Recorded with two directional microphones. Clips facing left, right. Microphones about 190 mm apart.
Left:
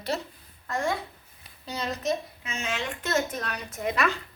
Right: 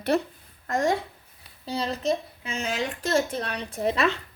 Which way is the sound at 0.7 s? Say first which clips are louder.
Right 5 dB; 40° right (ahead or behind).